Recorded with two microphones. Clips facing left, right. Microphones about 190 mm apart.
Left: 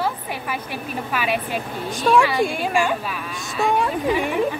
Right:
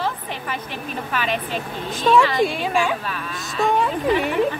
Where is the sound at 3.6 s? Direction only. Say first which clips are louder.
Right 1 dB; 10° left (ahead or behind).